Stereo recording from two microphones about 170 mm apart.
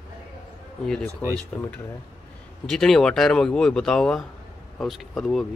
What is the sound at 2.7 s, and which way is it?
Speech, 5° left (ahead or behind).